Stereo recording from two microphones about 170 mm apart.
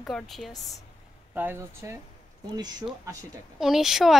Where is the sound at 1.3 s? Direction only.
10° right (ahead or behind).